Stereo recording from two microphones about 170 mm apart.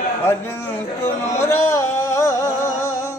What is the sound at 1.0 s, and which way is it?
Music, 15° left (ahead or behind).